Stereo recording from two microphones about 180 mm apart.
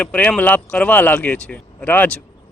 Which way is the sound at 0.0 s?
5° left (ahead or behind).